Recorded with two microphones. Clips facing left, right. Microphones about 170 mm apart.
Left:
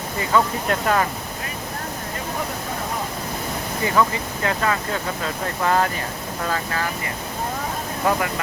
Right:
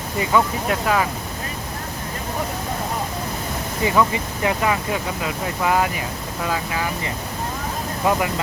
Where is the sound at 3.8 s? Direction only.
15° right (ahead or behind).